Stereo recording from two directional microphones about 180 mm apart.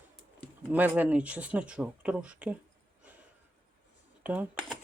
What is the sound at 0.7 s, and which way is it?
Speech, 10° right (ahead or behind).